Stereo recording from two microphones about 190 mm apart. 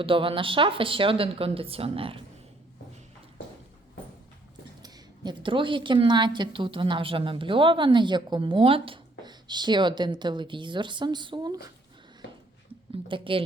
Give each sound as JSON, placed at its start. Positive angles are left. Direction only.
{"t": 0.0, "sound": "speech", "side_deg": -30}
{"t": 4.8, "sound": "speech", "side_deg": -25}
{"t": 12.9, "sound": "speech", "side_deg": -25}